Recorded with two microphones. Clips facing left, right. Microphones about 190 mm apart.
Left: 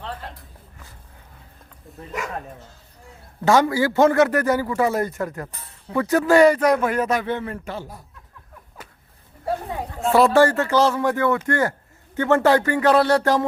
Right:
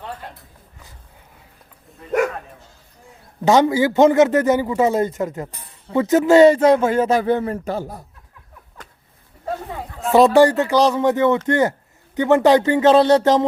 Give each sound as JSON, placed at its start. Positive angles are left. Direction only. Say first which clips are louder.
{"t": 3.4, "sound": "a man's voice", "louder": "right 3 dB", "side_deg": -20}
{"t": 10.1, "sound": "a man's voice", "louder": "right 3 dB", "side_deg": -20}